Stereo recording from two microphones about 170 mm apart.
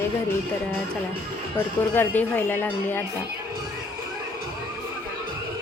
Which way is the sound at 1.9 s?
10° left (ahead or behind).